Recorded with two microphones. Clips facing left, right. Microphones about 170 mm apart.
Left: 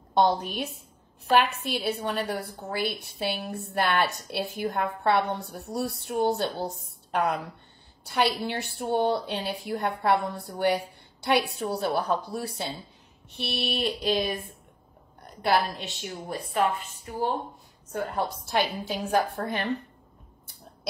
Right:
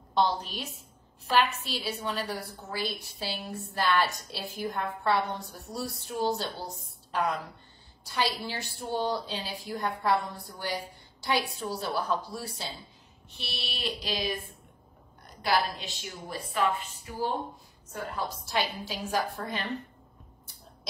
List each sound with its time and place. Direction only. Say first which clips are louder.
0.1 s a woman's voice: left 4 dB; 55° left (ahead or behind)
13.4 s a sound: left 9 dB; 55° left (ahead or behind)
17.9 s a woman's voice: left 5 dB; 60° left (ahead or behind)